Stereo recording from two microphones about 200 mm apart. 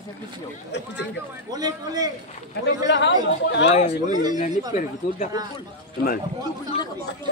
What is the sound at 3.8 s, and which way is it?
Speech, 35° left (ahead or behind).